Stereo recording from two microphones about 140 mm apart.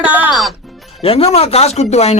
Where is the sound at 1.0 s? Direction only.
45° left (ahead or behind).